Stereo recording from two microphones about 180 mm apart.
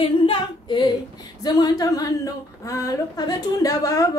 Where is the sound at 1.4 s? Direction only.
20° left (ahead or behind).